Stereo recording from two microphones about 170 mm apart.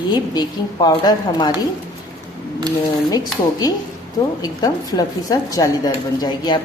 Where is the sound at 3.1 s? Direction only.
20° left (ahead or behind).